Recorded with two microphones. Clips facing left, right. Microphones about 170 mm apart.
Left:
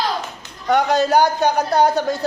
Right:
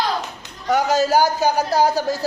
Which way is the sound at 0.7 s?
5° right (ahead or behind).